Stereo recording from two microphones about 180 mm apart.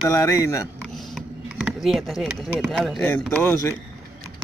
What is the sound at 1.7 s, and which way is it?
Speech, centre (ahead or behind).